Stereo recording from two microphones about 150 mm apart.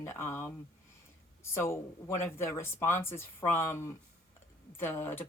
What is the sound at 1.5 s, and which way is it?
Speech, 15° left (ahead or behind).